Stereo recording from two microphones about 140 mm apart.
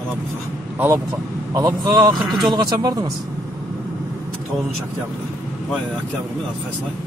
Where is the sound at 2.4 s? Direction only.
30° right (ahead or behind).